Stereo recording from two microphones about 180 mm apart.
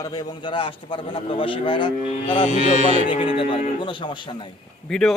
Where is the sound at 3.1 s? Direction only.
30° left (ahead or behind).